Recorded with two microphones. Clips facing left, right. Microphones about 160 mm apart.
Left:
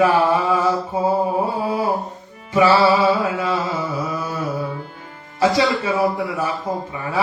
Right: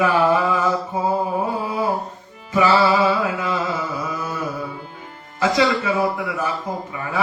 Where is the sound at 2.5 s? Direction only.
30° left (ahead or behind).